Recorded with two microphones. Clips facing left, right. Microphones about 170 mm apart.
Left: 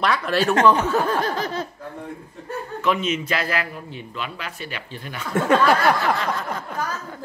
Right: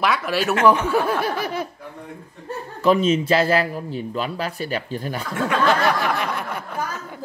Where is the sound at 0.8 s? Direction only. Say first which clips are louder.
Right 1 dB; 10° right (ahead or behind).